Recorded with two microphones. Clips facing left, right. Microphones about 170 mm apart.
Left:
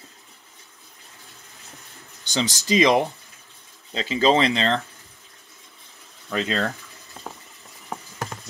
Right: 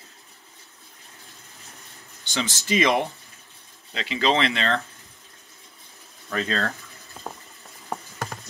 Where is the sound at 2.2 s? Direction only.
40° left (ahead or behind).